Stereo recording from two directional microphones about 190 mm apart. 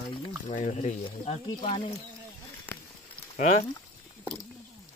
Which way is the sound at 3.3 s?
40° left (ahead or behind).